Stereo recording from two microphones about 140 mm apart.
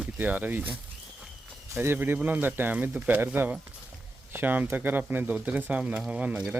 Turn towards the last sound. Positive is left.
turn(degrees=-10)  # may be behind; listen again after turning